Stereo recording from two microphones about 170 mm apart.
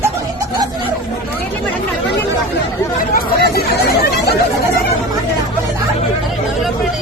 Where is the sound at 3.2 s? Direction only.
70° left (ahead or behind).